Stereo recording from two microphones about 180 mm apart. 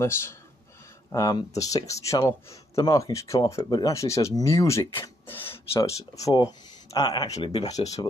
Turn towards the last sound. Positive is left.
turn(degrees=20)  # may be behind; listen again after turning